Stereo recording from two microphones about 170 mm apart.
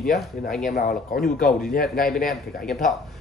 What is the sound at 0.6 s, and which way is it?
Speech, 60° left (ahead or behind).